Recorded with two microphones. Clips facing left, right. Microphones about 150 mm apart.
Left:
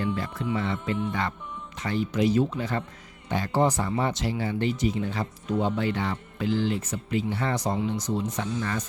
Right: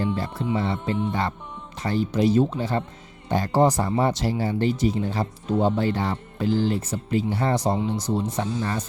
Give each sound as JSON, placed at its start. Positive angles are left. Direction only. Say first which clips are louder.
{"t": 0.0, "sound": "speech", "louder": "right 3 dB", "side_deg": -30}